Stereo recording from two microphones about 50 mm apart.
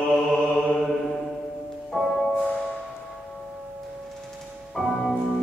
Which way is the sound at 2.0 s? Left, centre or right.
Centre.